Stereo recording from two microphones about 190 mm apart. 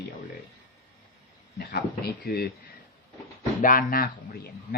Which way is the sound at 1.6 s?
55° left (ahead or behind).